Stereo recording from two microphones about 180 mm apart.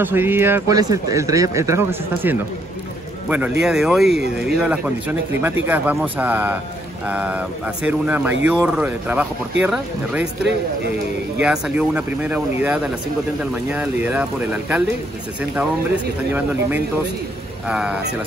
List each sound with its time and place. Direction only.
0.0 s a man's voice: 10° right (ahead or behind)
11.4 s a man's voice: 5° right (ahead or behind)
17.6 s speech: 5° right (ahead or behind)